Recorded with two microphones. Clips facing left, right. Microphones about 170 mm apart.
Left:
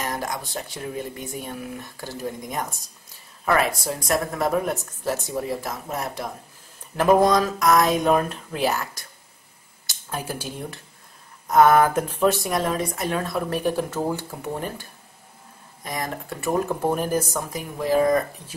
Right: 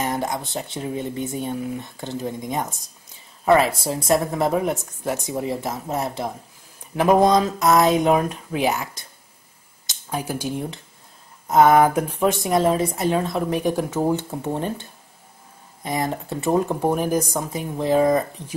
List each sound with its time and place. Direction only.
0.0 s speech: 25° right (ahead or behind)
8.1 s speech: 10° right (ahead or behind)
12.4 s speech: 25° right (ahead or behind)